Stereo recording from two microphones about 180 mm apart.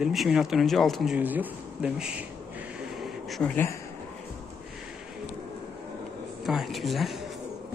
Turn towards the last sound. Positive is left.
turn(degrees=0)  # may be behind; listen again after turning